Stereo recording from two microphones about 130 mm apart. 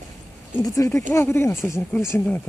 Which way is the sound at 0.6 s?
25° left (ahead or behind).